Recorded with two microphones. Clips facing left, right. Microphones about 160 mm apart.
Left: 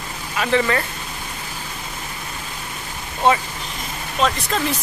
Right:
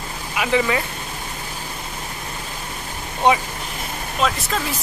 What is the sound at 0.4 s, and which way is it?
Speech, 10° right (ahead or behind).